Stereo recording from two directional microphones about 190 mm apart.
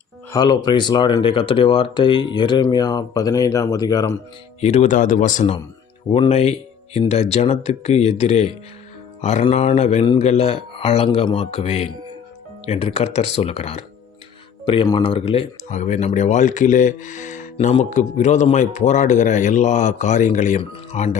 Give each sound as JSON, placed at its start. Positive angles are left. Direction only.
{"t": 0.3, "sound": "speech", "side_deg": 20}
{"t": 4.6, "sound": "speech", "side_deg": 35}